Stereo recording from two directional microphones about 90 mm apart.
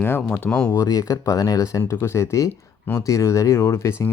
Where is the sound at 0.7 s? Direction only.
45° left (ahead or behind).